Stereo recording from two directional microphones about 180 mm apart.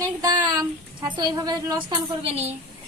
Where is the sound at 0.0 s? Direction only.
20° right (ahead or behind).